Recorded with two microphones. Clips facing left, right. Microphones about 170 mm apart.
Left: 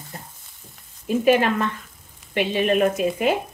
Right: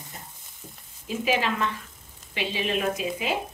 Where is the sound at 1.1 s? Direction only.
50° left (ahead or behind).